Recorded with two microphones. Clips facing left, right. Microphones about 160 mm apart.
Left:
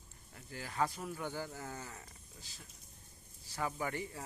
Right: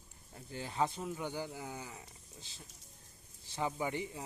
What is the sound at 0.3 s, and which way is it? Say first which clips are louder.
Speech: right 1 dB; 25° right (ahead or behind).